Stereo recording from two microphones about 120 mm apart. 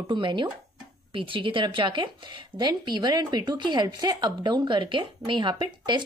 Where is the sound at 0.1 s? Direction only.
40° right (ahead or behind).